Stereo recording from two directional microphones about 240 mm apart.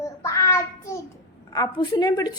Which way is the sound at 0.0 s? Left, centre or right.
Centre.